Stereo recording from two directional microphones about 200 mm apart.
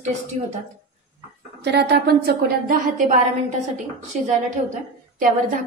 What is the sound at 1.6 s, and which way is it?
A woman's voice, 55° right (ahead or behind).